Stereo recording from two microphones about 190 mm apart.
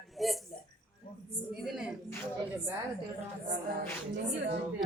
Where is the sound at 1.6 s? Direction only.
Centre (ahead or behind).